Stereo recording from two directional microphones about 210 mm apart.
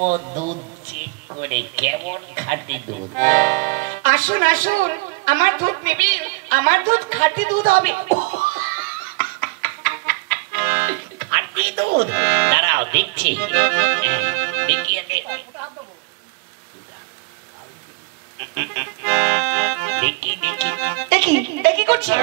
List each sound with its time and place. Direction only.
0.0 s speech: 35° right (ahead or behind)
2.3 s music: 40° right (ahead or behind); by 15.4 s 65° right (ahead or behind)
18.5 s music: 55° right (ahead or behind)